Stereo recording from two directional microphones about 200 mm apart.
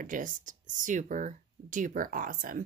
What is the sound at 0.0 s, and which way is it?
A woman's voice, 40° right (ahead or behind).